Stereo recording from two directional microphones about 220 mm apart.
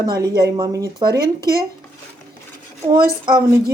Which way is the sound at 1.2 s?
45° right (ahead or behind).